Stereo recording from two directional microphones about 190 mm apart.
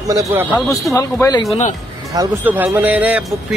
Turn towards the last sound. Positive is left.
turn(degrees=-10)  # may be behind; listen again after turning